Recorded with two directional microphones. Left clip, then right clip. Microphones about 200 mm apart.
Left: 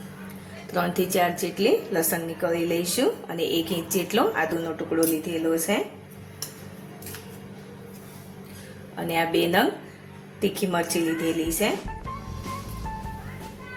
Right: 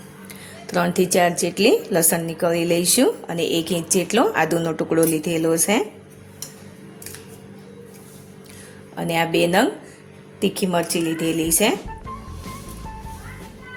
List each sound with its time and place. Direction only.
0.7 s a woman's voice: 40° right (ahead or behind)
9.0 s speech: 40° right (ahead or behind)
11.6 s speech: 55° right (ahead or behind)